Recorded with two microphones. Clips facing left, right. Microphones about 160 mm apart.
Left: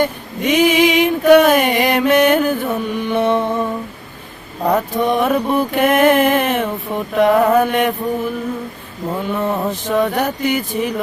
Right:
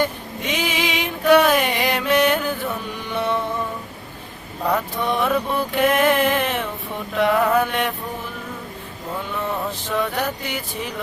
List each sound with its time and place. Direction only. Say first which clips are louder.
0.0 s a sound: left 5 dB; 55° left (ahead or behind)
4.6 s mantra: left 6 dB; 45° left (ahead or behind)
9.1 s mantra: left 6 dB; 50° left (ahead or behind)